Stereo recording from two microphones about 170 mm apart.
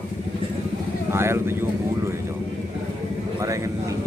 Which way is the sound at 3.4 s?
20° right (ahead or behind).